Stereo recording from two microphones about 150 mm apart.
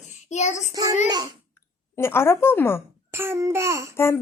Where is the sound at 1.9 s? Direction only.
15° left (ahead or behind).